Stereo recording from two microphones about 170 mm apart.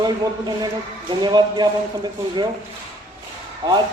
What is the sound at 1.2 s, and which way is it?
Speech, 25° right (ahead or behind).